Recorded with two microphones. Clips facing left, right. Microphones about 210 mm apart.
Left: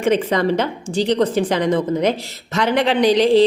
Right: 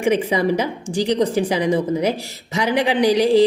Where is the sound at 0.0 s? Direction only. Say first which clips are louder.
Left 1 dB; 10° right (ahead or behind).